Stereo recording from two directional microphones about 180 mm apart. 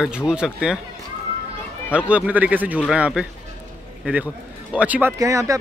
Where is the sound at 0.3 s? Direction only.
5° right (ahead or behind).